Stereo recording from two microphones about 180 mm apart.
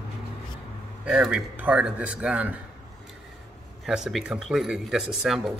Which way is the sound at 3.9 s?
Centre (ahead or behind).